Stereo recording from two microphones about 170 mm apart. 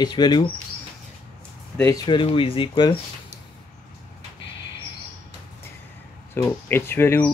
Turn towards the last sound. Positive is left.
turn(degrees=10)  # may be behind; listen again after turning